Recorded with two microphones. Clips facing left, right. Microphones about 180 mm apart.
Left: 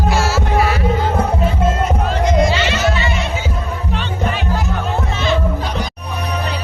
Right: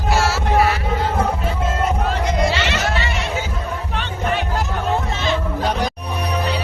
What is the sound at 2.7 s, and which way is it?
Music, 70° right (ahead or behind).